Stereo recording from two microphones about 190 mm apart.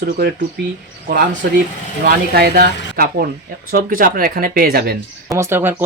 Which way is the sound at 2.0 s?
55° right (ahead or behind).